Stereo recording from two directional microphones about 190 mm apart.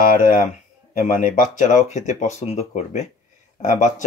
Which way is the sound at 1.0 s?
45° left (ahead or behind).